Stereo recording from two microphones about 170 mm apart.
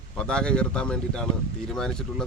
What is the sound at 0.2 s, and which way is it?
Speech, 5° left (ahead or behind).